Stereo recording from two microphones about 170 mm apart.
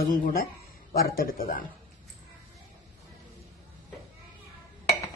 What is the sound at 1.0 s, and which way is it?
Speech, 55° left (ahead or behind).